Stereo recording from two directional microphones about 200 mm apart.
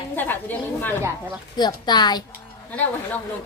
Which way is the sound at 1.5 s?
20° left (ahead or behind).